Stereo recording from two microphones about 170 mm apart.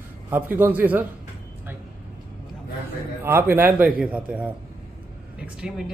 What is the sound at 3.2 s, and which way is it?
A man's voice, 15° right (ahead or behind).